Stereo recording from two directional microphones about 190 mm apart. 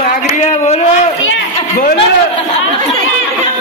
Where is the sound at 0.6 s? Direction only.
35° left (ahead or behind).